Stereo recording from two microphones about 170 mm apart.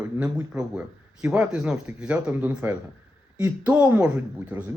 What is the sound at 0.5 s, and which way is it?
Speech, 5° right (ahead or behind).